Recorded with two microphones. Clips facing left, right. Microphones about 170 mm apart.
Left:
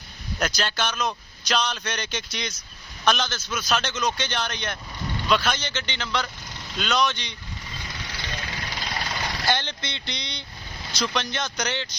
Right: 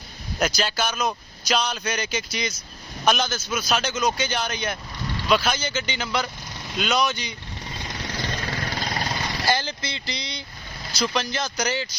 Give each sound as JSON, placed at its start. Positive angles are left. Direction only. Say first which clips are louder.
{"t": 0.3, "sound": "a man's voice", "louder": "right 3 dB", "side_deg": -5}
{"t": 8.1, "sound": "vehicle", "louder": "right 6 dB", "side_deg": -45}
{"t": 9.5, "sound": "a man's voice", "louder": "right 2 dB", "side_deg": -5}